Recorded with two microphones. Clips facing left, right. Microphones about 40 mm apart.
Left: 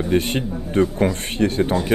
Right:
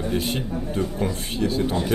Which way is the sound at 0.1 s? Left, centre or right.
Left.